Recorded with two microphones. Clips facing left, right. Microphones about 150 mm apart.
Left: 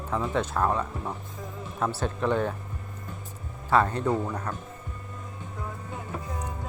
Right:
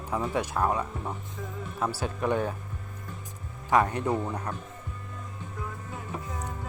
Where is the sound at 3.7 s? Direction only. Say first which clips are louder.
Left 1 dB; 15° right (ahead or behind).